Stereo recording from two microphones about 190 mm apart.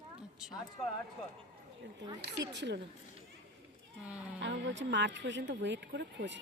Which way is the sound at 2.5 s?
65° right (ahead or behind).